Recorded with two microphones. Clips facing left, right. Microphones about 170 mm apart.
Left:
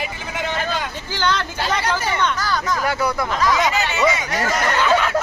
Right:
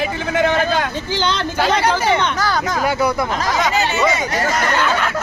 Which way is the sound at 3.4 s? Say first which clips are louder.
Left 2 dB; 35° right (ahead or behind).